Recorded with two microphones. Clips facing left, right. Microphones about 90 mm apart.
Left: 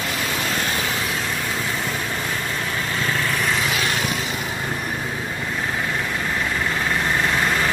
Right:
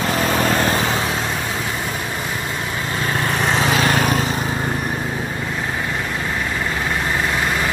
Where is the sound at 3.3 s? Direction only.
35° right (ahead or behind).